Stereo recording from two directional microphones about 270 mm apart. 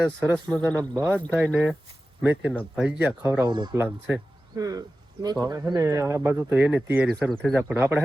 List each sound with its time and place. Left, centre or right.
0.4 s speech: centre